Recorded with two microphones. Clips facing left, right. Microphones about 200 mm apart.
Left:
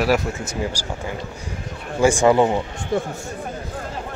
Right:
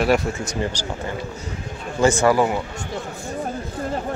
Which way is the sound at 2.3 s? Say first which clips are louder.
Left 2 dB; 25° left (ahead or behind).